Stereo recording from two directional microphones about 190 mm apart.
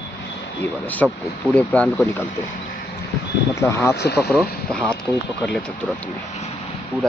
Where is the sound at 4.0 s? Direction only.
60° left (ahead or behind).